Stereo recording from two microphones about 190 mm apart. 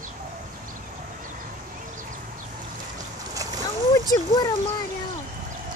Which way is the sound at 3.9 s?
20° left (ahead or behind).